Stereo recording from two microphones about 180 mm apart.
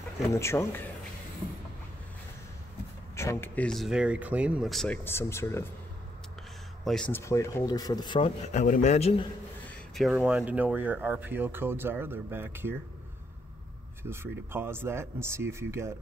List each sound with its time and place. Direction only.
0.3 s speech: 15° left (ahead or behind)
3.2 s speech: 15° left (ahead or behind)
6.8 s speech: centre (ahead or behind)
7.1 s speech: 15° left (ahead or behind)
8.5 s speech: 45° left (ahead or behind)
10.1 s speech: 10° right (ahead or behind)
14.0 s speech: 15° right (ahead or behind)